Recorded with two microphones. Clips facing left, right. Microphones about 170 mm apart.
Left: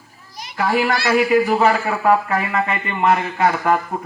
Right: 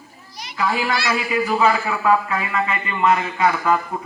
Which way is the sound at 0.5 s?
55° left (ahead or behind).